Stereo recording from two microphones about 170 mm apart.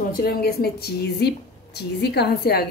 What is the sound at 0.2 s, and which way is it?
A woman's voice, 65° left (ahead or behind).